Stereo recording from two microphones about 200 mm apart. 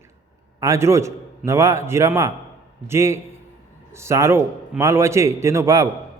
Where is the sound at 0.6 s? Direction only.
15° right (ahead or behind).